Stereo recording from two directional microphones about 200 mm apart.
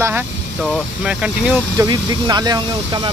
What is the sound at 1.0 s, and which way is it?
Speech, 5° right (ahead or behind).